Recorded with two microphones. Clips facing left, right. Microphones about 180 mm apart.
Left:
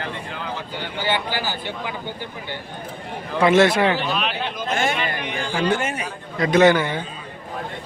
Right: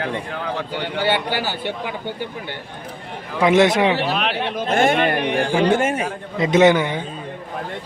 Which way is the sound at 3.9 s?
70° right (ahead or behind).